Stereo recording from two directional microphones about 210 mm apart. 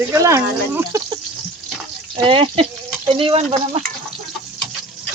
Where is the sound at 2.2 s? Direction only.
25° right (ahead or behind).